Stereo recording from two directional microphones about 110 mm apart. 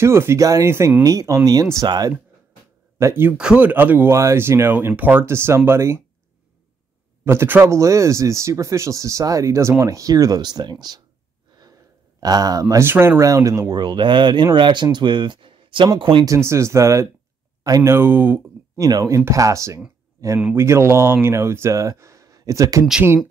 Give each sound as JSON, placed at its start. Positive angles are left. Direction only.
{"t": 0.0, "sound": "speech", "side_deg": -25}
{"t": 3.0, "sound": "speech", "side_deg": -25}
{"t": 3.3, "sound": "speech", "side_deg": -10}
{"t": 7.2, "sound": "speech", "side_deg": -20}
{"t": 12.2, "sound": "speech", "side_deg": -35}
{"t": 13.2, "sound": "speech", "side_deg": -30}
{"t": 16.3, "sound": "speech", "side_deg": -25}
{"t": 18.8, "sound": "speech", "side_deg": -30}